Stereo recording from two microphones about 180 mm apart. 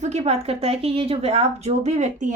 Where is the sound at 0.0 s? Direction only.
35° right (ahead or behind).